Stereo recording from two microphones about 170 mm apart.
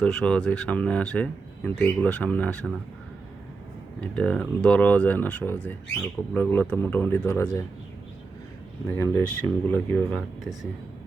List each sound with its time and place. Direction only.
0.0 s speech: 5° left (ahead or behind)
4.0 s speech: 5° left (ahead or behind)
8.9 s speech: 15° left (ahead or behind)